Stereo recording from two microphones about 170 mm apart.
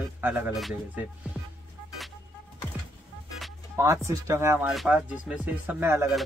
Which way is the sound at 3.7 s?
15° right (ahead or behind).